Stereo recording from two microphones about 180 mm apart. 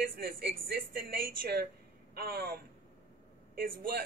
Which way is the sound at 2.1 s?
55° right (ahead or behind).